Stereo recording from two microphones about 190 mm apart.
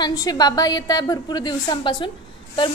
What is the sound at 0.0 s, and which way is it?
A woman's voice, 20° left (ahead or behind).